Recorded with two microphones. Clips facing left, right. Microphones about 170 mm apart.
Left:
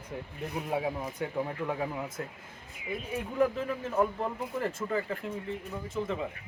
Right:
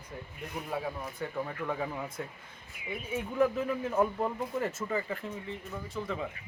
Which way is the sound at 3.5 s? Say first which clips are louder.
Right 1 dB; 5° right (ahead or behind).